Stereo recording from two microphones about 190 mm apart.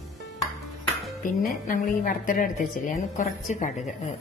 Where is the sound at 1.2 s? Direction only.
45° left (ahead or behind).